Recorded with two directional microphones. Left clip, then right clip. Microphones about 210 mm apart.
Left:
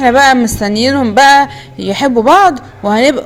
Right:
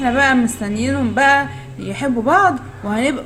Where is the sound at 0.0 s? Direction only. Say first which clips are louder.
Left 8 dB; 40° left (ahead or behind).